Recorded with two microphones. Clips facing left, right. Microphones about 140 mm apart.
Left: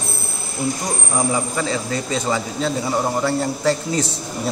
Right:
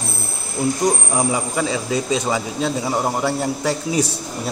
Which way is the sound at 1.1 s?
15° right (ahead or behind).